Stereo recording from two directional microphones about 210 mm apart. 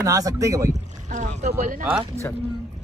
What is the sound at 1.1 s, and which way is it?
Boat, 35° right (ahead or behind).